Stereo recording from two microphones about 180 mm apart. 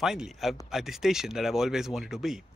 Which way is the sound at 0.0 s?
Centre (ahead or behind).